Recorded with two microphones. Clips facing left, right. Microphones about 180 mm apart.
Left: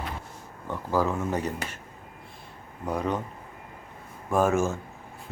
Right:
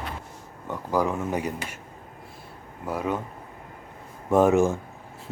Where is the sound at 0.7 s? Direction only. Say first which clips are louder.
Right 1 dB; 15° right (ahead or behind).